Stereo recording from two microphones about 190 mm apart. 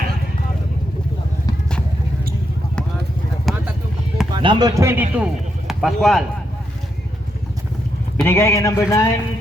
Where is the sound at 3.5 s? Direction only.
Centre (ahead or behind).